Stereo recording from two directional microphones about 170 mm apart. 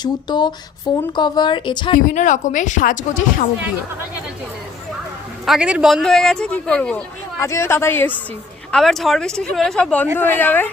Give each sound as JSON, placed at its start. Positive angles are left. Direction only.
{"t": 0.0, "sound": "a woman's voice", "side_deg": 25}
{"t": 2.0, "sound": "speech", "side_deg": 50}
{"t": 5.5, "sound": "speech", "side_deg": -5}
{"t": 8.7, "sound": "speech", "side_deg": 0}